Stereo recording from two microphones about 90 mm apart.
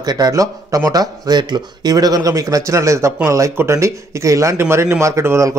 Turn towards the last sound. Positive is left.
turn(degrees=-35)  # may be behind; listen again after turning